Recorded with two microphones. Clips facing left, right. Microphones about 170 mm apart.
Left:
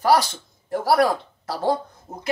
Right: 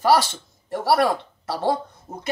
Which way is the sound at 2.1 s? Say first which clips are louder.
Right 1 dB; 10° right (ahead or behind).